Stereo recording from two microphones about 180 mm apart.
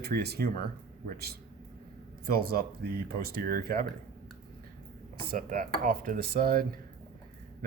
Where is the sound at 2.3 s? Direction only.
55° right (ahead or behind).